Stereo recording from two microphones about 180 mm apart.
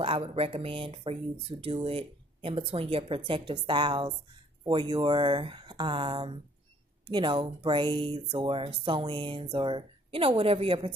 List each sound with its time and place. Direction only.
0.0 s speech: 30° right (ahead or behind)